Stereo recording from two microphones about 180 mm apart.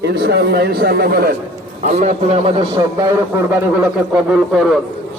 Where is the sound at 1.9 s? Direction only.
40° right (ahead or behind).